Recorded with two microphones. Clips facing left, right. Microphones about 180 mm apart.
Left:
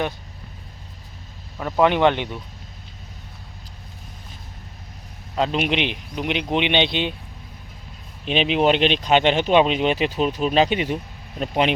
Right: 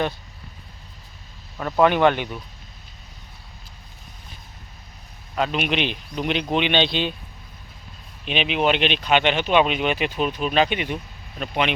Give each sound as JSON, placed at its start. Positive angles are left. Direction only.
{"t": 1.5, "sound": "speech", "side_deg": 10}
{"t": 5.3, "sound": "speech", "side_deg": 25}
{"t": 8.2, "sound": "speech", "side_deg": 35}